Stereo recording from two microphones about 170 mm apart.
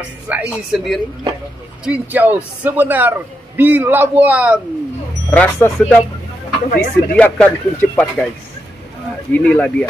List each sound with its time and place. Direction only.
0.3 s a man's voice: 10° right (ahead or behind)
5.3 s speech: 10° left (ahead or behind)
6.7 s speech: 65° left (ahead or behind)
7.2 s speech: 10° left (ahead or behind)
9.3 s speech: 10° left (ahead or behind)